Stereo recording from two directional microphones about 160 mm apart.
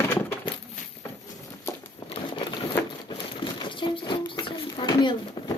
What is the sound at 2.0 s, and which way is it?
Crumpling, 25° left (ahead or behind).